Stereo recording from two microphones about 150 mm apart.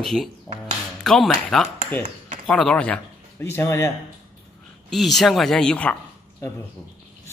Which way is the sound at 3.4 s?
15° left (ahead or behind).